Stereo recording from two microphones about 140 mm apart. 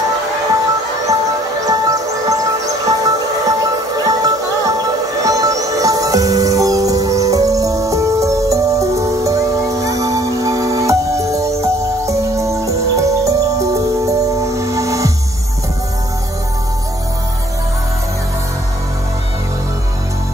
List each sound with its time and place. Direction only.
1.6 s music: 25° right (ahead or behind)